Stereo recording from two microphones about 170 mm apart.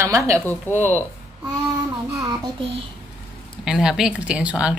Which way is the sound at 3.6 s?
5° right (ahead or behind).